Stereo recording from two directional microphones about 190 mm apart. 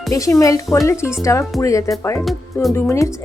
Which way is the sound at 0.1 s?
15° left (ahead or behind).